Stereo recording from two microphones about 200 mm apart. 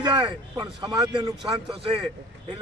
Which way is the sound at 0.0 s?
20° right (ahead or behind).